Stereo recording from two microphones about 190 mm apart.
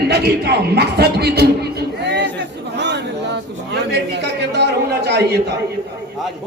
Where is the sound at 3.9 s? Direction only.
60° right (ahead or behind).